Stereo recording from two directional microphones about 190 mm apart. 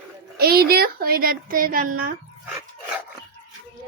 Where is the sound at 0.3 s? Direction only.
55° right (ahead or behind).